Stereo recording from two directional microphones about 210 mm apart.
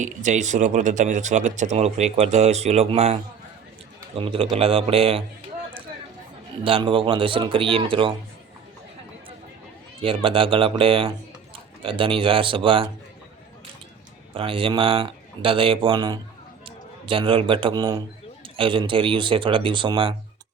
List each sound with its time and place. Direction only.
0.0 s speech: 35° right (ahead or behind)
6.7 s speech: 25° right (ahead or behind)
10.0 s speech: 25° right (ahead or behind)
14.3 s a man's voice: 25° right (ahead or behind)